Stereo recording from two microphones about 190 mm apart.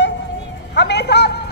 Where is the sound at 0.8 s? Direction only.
65° left (ahead or behind).